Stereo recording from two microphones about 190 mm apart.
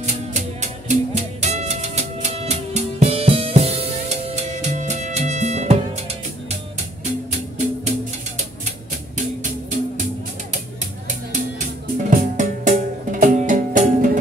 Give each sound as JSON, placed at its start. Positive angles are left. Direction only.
{"t": 0.0, "sound": "music", "side_deg": -35}
{"t": 7.2, "sound": "music", "side_deg": -35}
{"t": 12.1, "sound": "music", "side_deg": -40}